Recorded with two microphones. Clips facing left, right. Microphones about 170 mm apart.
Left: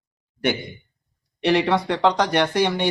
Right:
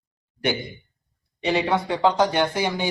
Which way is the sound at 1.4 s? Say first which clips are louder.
Left 3 dB; 75° left (ahead or behind).